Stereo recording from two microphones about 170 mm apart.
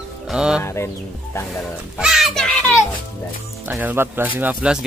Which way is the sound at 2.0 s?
Centre (ahead or behind).